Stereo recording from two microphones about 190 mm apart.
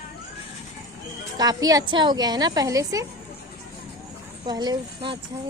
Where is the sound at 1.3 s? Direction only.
20° right (ahead or behind).